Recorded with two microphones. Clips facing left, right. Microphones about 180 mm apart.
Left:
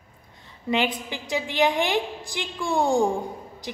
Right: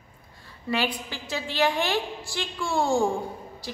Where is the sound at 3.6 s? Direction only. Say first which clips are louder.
Left 2 dB; 20° left (ahead or behind).